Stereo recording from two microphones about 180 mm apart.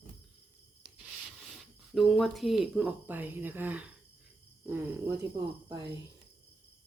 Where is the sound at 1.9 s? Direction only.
Centre (ahead or behind).